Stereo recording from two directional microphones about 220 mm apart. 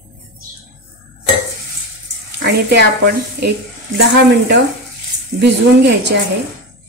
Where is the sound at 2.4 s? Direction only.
50° right (ahead or behind).